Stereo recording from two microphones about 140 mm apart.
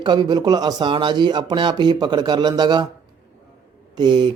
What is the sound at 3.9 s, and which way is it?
Speech, 30° right (ahead or behind).